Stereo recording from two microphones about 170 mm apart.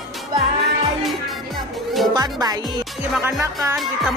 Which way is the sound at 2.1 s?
20° right (ahead or behind).